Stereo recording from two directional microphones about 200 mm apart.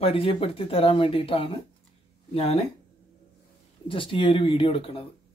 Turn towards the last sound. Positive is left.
turn(degrees=30)  # may be behind; listen again after turning